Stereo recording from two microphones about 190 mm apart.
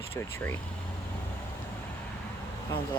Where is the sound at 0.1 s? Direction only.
10° left (ahead or behind).